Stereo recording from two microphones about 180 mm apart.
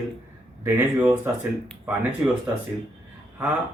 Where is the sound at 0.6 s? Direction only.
10° right (ahead or behind).